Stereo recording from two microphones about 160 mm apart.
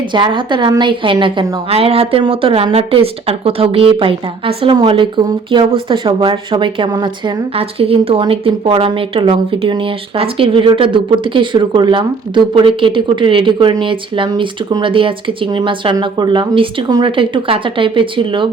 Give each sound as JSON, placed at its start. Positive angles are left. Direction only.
{"t": 0.1, "sound": "a woman's voice", "side_deg": -30}